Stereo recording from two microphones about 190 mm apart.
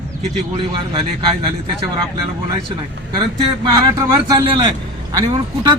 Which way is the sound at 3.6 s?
20° right (ahead or behind).